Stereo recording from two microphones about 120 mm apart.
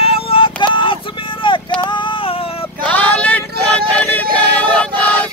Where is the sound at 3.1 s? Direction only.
10° left (ahead or behind).